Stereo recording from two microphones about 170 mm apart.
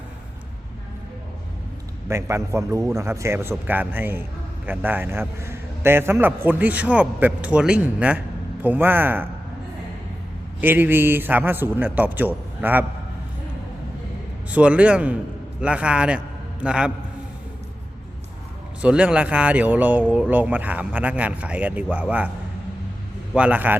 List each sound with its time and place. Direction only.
2.0 s a man's voice: 15° right (ahead or behind)
10.6 s a man's voice: 10° right (ahead or behind)
14.5 s a man's voice: 5° right (ahead or behind)
18.8 s a man's voice: 5° right (ahead or behind)
23.3 s a man's voice: 10° right (ahead or behind)